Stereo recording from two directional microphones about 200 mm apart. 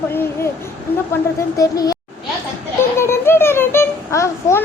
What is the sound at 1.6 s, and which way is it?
A child's voice, 15° left (ahead or behind).